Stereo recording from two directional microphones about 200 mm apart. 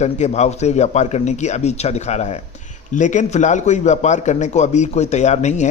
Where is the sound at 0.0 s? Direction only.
35° left (ahead or behind).